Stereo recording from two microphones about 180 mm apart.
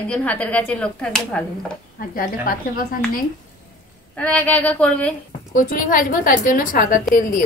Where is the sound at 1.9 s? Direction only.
50° left (ahead or behind).